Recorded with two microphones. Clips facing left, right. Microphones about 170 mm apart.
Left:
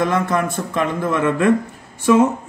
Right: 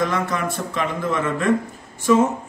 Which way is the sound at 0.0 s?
55° left (ahead or behind).